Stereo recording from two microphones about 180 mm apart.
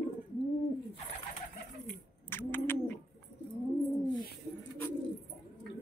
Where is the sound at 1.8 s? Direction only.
10° left (ahead or behind).